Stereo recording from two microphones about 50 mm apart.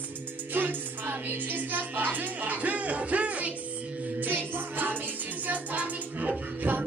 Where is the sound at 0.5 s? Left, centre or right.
Right.